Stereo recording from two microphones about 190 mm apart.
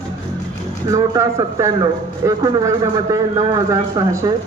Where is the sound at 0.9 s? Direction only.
15° right (ahead or behind).